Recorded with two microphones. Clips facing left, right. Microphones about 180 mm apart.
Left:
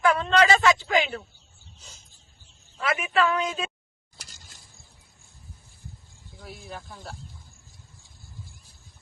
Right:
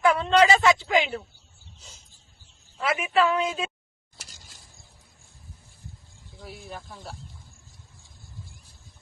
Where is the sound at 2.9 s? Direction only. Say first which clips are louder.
Right 1 dB; 20° right (ahead or behind).